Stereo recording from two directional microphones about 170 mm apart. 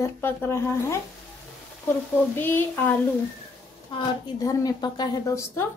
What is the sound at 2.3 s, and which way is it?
Speech, 10° left (ahead or behind).